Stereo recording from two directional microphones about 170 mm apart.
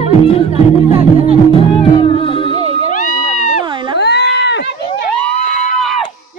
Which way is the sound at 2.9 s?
50° left (ahead or behind).